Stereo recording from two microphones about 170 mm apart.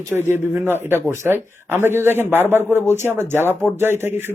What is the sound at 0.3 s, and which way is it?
A man's voice, 15° right (ahead or behind).